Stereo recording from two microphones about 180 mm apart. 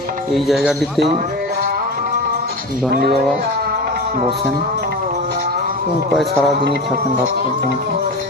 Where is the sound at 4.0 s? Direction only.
55° right (ahead or behind).